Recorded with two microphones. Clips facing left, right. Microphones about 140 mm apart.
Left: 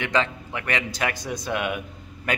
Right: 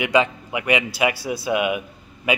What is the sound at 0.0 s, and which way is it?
Speech, 10° right (ahead or behind).